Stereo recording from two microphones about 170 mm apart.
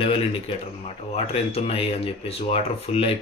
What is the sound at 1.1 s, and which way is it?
Speech, 35° left (ahead or behind).